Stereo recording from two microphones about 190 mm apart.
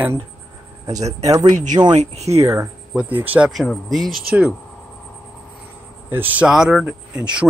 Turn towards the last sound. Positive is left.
turn(degrees=-5)  # may be behind; listen again after turning